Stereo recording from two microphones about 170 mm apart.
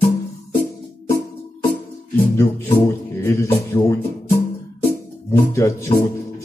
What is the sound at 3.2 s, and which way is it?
Speech, 15° left (ahead or behind).